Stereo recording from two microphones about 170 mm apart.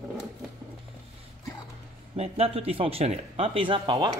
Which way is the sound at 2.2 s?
35° right (ahead or behind).